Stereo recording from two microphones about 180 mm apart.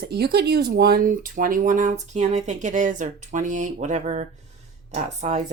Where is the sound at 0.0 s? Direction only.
60° right (ahead or behind).